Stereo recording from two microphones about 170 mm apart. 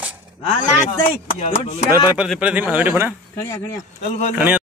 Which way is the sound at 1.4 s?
40° left (ahead or behind).